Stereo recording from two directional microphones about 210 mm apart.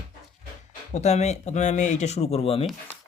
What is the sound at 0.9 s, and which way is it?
Speech, 30° left (ahead or behind).